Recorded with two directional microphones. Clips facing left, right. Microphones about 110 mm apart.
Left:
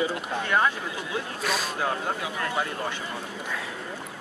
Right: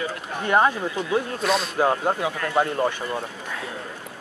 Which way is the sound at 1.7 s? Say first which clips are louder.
Right 7 dB; 40° right (ahead or behind).